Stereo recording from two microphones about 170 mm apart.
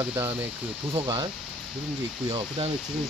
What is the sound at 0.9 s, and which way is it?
Speech, 30° right (ahead or behind).